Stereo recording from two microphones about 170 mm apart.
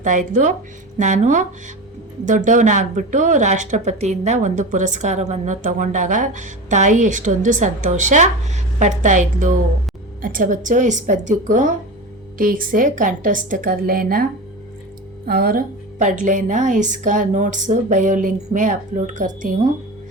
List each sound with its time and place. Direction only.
0.0 s a woman's voice: 50° right (ahead or behind)
15.3 s speech: 60° right (ahead or behind)